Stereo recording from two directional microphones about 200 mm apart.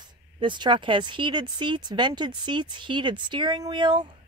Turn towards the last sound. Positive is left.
turn(degrees=-25)  # may be behind; listen again after turning